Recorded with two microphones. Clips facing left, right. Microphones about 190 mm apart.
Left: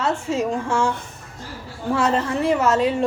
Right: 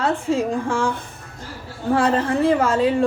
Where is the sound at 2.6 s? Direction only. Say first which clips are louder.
Right 1 dB; 30° right (ahead or behind).